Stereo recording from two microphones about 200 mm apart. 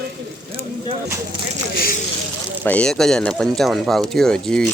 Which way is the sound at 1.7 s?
50° left (ahead or behind).